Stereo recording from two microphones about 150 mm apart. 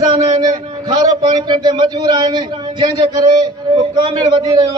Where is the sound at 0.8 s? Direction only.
25° right (ahead or behind).